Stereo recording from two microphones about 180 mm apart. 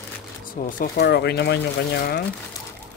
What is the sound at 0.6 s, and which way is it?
Speech, 50° left (ahead or behind).